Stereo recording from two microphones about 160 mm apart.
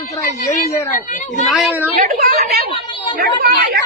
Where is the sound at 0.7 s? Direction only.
50° left (ahead or behind).